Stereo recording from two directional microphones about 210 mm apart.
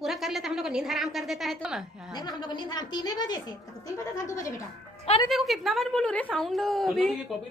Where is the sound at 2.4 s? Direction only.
20° left (ahead or behind).